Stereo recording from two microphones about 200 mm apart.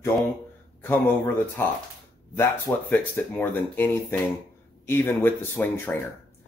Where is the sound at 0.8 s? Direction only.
10° left (ahead or behind).